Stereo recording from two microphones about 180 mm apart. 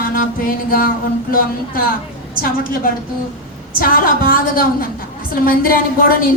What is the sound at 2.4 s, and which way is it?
Speech, 55° left (ahead or behind).